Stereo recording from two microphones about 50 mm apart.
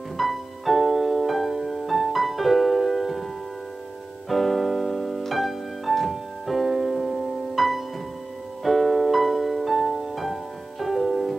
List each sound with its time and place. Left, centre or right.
0.2 s music: centre
4.3 s piano: centre
8.6 s music: centre